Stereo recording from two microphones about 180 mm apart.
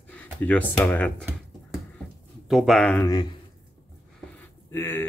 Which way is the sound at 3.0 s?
20° left (ahead or behind).